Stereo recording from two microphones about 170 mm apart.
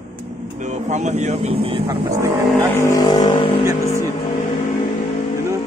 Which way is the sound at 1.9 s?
15° right (ahead or behind).